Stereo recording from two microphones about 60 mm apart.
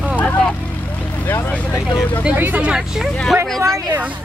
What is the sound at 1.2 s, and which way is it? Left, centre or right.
Speech, left.